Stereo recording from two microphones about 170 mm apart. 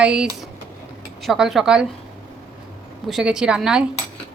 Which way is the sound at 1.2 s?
Centre (ahead or behind).